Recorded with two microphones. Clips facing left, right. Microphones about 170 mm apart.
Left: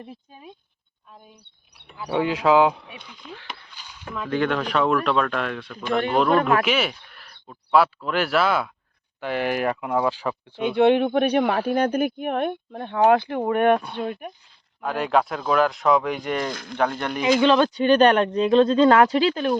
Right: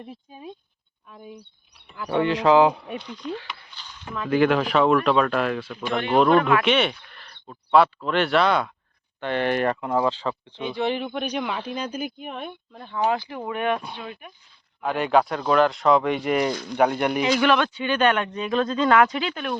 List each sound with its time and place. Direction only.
0.3 s speech: 20° right (ahead or behind)
1.1 s speech: 70° right (ahead or behind)
2.0 s speech: 5° left (ahead or behind)
3.8 s a sound: 10° left (ahead or behind)
4.3 s speech: 5° right (ahead or behind)
6.4 s speech: 40° left (ahead or behind)
6.7 s speech: 5° left (ahead or behind)
10.6 s speech: 60° left (ahead or behind)
14.8 s speech: centre (ahead or behind)
17.3 s speech: 25° left (ahead or behind)
17.7 s speech: 40° left (ahead or behind)